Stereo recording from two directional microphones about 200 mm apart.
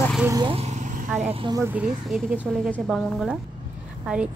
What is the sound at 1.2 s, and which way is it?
Speech, 25° right (ahead or behind).